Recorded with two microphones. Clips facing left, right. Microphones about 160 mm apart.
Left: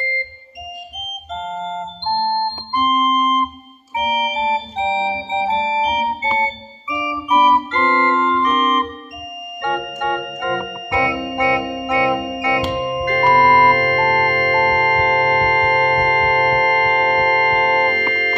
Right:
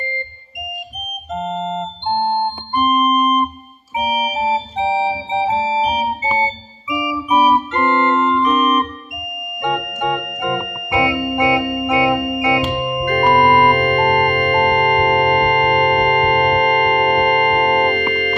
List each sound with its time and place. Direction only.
1.3 s organ: 15° right (ahead or behind)
2.7 s keyboard: 5° right (ahead or behind)
3.9 s organ: 10° right (ahead or behind)
5.4 s music: 15° right (ahead or behind)
9.6 s organ: 10° right (ahead or behind)